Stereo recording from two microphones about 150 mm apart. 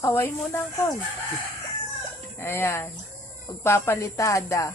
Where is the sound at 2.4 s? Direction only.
15° left (ahead or behind).